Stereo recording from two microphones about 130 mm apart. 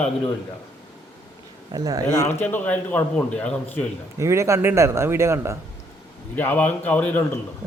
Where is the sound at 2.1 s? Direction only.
20° left (ahead or behind).